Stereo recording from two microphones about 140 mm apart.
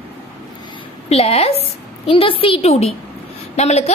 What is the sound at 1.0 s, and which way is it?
A woman's voice, 45° left (ahead or behind).